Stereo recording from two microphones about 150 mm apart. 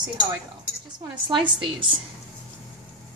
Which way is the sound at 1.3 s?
35° right (ahead or behind).